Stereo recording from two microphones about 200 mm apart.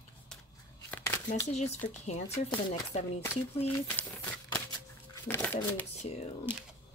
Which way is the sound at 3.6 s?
10° left (ahead or behind).